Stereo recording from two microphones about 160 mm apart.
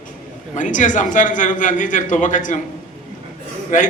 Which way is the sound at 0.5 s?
55° left (ahead or behind).